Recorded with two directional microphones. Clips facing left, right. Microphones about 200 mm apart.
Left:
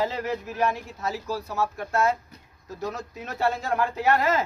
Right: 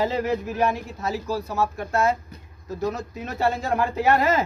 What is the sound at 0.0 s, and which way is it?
Speech, 10° right (ahead or behind).